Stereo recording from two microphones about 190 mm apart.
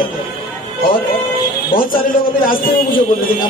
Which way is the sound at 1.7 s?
50° left (ahead or behind).